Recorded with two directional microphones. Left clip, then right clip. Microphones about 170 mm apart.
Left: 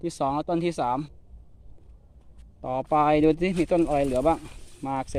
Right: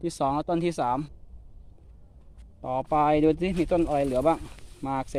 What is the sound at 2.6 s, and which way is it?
Speech, 20° left (ahead or behind).